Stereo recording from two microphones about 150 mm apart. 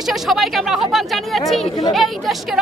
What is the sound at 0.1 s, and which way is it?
Speech, centre (ahead or behind).